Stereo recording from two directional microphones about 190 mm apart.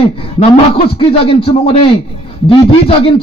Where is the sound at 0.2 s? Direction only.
30° left (ahead or behind).